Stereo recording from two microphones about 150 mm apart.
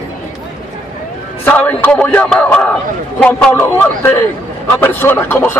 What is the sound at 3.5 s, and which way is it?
A man's voice, 20° left (ahead or behind).